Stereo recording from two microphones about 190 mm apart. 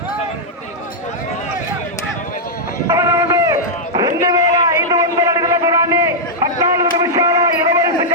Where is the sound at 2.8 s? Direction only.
15° right (ahead or behind).